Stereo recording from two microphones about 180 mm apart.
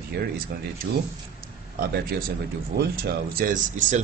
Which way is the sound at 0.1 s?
65° right (ahead or behind).